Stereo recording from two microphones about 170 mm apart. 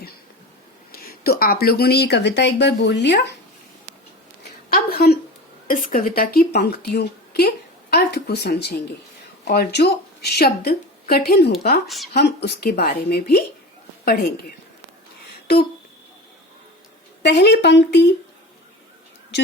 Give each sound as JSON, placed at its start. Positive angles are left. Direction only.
{"t": 0.9, "sound": "speech", "side_deg": 65}
{"t": 4.9, "sound": "a sound", "side_deg": 65}
{"t": 5.6, "sound": "a woman's voice", "side_deg": 55}
{"t": 17.2, "sound": "speech", "side_deg": 80}